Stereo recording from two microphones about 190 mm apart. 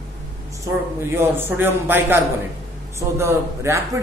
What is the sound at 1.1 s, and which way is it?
A man's voice, 10° right (ahead or behind).